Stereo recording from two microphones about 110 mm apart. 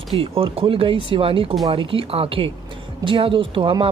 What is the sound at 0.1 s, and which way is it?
A woman's voice, 60° right (ahead or behind).